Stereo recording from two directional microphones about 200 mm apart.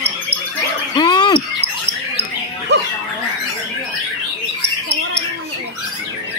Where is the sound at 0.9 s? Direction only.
20° left (ahead or behind).